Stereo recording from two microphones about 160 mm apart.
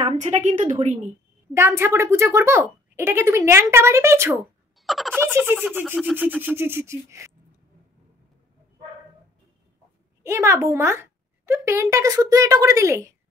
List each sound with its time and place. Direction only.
0.2 s a woman's voice: 45° right (ahead or behind)
1.5 s speech: 15° right (ahead or behind)
4.8 s speech: centre (ahead or behind)
5.1 s speech: 15° right (ahead or behind)
10.2 s a child's voice: 20° right (ahead or behind)